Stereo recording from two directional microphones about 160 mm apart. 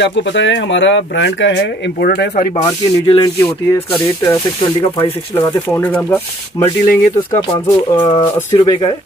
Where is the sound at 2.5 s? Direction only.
30° left (ahead or behind).